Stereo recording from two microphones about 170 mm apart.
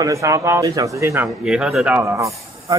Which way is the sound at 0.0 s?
20° right (ahead or behind).